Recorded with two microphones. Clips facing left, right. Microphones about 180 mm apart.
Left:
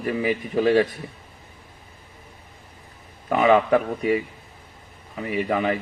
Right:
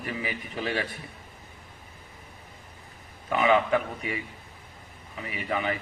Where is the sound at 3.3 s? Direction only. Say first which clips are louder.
Left 5 dB; 35° left (ahead or behind).